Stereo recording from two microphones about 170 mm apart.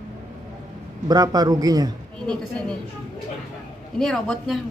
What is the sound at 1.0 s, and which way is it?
Speech, 20° right (ahead or behind).